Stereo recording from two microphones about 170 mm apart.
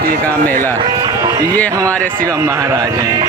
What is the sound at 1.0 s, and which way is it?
Music, 20° right (ahead or behind).